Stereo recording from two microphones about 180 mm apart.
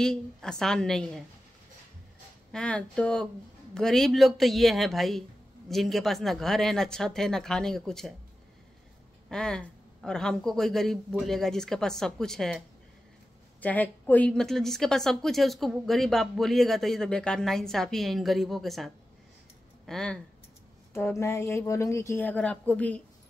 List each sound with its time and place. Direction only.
0.0 s a woman's voice: 5° left (ahead or behind)
2.5 s a woman's voice: 5° left (ahead or behind)
9.3 s a woman's voice: 5° left (ahead or behind)
19.9 s a woman's voice: 5° left (ahead or behind)
20.9 s a woman's voice: 15° left (ahead or behind)